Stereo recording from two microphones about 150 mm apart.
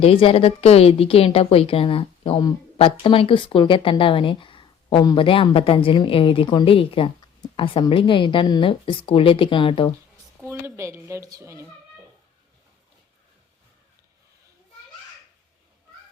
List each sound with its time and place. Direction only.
0.0 s speech: 40° left (ahead or behind)
10.4 s speech: 20° right (ahead or behind)